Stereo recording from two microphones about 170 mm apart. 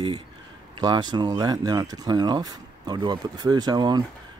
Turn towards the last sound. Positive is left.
turn(degrees=-25)  # may be behind; listen again after turning